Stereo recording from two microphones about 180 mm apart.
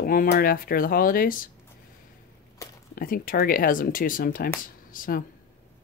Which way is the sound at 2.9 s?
50° left (ahead or behind).